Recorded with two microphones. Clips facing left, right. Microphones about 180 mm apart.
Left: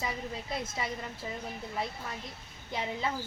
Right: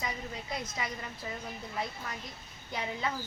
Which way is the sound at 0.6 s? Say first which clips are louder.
Left 1 dB; 25° left (ahead or behind).